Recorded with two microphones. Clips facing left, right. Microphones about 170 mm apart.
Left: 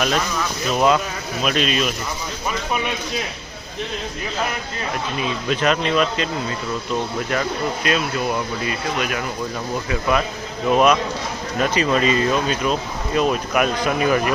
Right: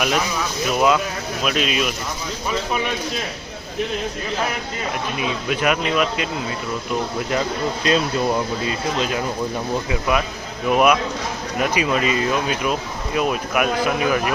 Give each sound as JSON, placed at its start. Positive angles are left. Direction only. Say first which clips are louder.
{"t": 0.0, "sound": "speech", "louder": "even", "side_deg": -10}
{"t": 5.5, "sound": "speech", "louder": "left 1 dB", "side_deg": -10}
{"t": 7.9, "sound": "speech", "louder": "right 4 dB", "side_deg": -30}
{"t": 9.9, "sound": "speech", "louder": "left 3 dB", "side_deg": -10}